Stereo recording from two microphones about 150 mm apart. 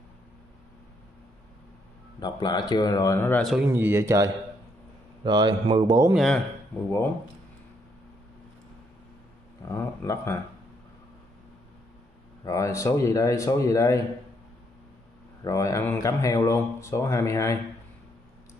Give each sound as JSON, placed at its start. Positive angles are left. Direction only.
{"t": 2.1, "sound": "speech", "side_deg": 30}
{"t": 3.6, "sound": "speech", "side_deg": -15}
{"t": 5.2, "sound": "speech", "side_deg": -30}
{"t": 6.1, "sound": "speech", "side_deg": 5}
{"t": 9.7, "sound": "speech", "side_deg": 15}
{"t": 12.4, "sound": "speech", "side_deg": 20}
{"t": 15.4, "sound": "speech", "side_deg": 20}